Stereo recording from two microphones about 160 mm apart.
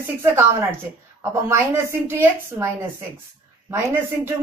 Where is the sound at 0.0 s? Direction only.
15° right (ahead or behind).